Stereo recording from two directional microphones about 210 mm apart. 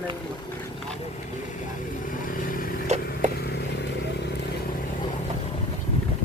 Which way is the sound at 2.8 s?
35° right (ahead or behind).